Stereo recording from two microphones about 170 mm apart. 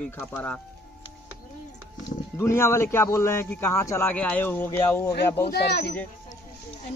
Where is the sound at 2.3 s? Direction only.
15° left (ahead or behind).